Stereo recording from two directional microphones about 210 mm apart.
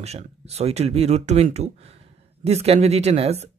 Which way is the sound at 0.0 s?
30° right (ahead or behind).